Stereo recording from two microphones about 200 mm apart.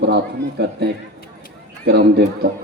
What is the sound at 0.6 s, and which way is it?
A man's voice, 55° right (ahead or behind).